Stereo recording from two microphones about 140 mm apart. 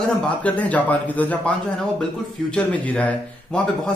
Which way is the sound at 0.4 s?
10° left (ahead or behind).